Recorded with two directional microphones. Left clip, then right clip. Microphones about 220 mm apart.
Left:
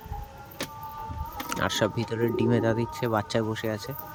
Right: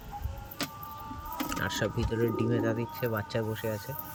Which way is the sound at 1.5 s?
20° left (ahead or behind).